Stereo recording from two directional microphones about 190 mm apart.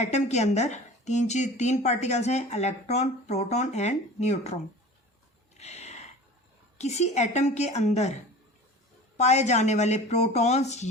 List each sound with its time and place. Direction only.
0.0 s a woman's voice: 35° left (ahead or behind)
5.5 s a sound: 35° left (ahead or behind)
6.7 s a woman's voice: 35° left (ahead or behind)
9.1 s a woman's voice: 35° left (ahead or behind)